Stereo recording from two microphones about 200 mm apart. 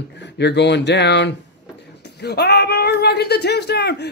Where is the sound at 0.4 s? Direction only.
60° left (ahead or behind).